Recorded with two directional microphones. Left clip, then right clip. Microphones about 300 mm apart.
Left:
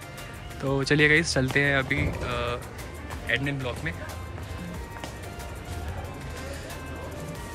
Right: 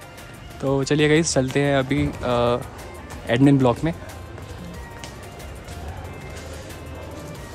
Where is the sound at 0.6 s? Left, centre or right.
Centre.